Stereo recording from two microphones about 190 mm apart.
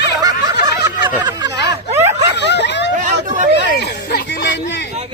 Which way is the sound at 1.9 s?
15° right (ahead or behind).